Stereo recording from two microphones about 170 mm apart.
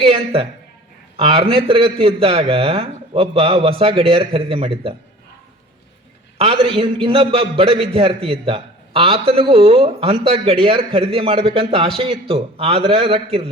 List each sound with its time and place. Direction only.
0.0 s a man's voice: 35° right (ahead or behind)
6.4 s a man's voice: 30° right (ahead or behind)